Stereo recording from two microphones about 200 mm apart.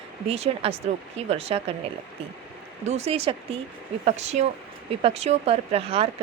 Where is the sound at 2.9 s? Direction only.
30° right (ahead or behind).